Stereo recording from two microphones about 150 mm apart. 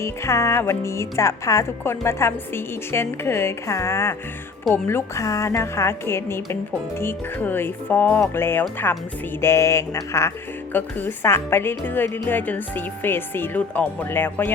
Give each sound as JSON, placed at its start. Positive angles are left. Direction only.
{"t": 0.0, "sound": "speech", "side_deg": 20}